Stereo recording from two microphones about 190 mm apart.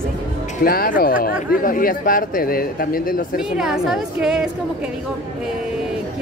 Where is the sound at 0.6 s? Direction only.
50° left (ahead or behind).